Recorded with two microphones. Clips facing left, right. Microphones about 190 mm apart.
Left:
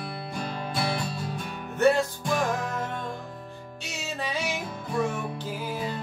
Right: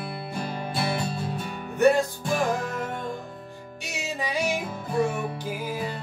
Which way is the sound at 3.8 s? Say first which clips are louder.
Right 2 dB; 15° right (ahead or behind).